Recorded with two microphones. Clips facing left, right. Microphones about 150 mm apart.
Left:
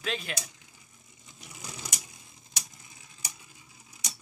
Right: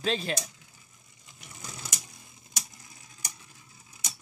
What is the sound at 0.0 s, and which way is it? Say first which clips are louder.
Speech: right 5 dB; 30° right (ahead or behind).